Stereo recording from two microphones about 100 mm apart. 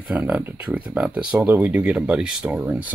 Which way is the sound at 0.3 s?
15° right (ahead or behind).